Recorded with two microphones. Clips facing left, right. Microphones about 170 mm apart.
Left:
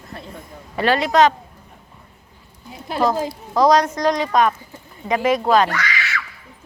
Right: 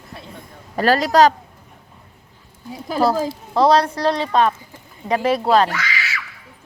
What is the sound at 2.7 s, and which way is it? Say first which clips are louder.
A woman's voice: right 1 dB; 35° right (ahead or behind).